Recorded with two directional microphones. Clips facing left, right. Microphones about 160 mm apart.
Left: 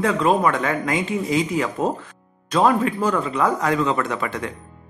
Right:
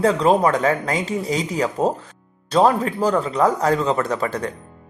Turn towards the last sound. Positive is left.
turn(degrees=-35)  # may be behind; listen again after turning